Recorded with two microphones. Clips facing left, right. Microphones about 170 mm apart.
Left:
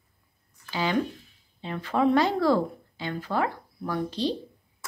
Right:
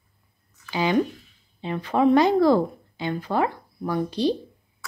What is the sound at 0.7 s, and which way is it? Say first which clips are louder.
Speech: right 4 dB; 15° right (ahead or behind).